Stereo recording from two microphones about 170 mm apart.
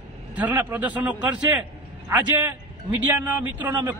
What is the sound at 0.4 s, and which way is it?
A man's voice, 10° right (ahead or behind).